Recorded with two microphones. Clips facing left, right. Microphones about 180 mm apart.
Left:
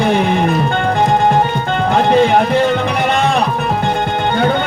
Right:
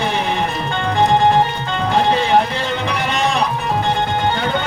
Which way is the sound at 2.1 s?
50° left (ahead or behind).